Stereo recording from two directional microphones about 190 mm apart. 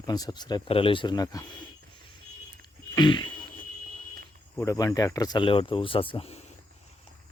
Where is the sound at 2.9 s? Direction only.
25° left (ahead or behind).